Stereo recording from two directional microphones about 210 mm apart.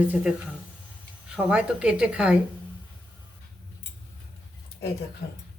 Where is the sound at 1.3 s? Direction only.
5° right (ahead or behind).